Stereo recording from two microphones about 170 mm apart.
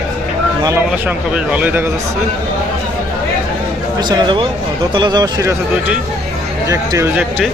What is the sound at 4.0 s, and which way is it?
A man's voice, 25° right (ahead or behind).